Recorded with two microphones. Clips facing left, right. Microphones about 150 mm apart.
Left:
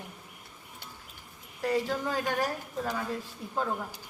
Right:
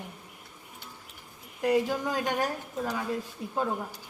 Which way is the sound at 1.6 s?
15° right (ahead or behind).